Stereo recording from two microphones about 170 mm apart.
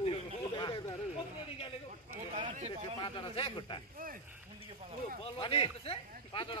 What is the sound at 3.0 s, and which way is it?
Speech, 30° left (ahead or behind).